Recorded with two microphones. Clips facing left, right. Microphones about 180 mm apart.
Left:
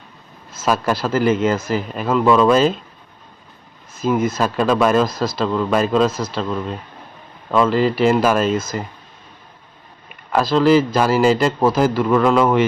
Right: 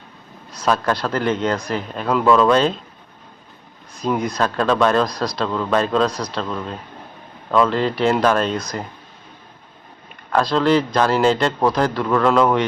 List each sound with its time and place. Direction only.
0.5 s speech: 5° left (ahead or behind)
3.9 s speech: 5° left (ahead or behind)
10.3 s speech: 5° left (ahead or behind)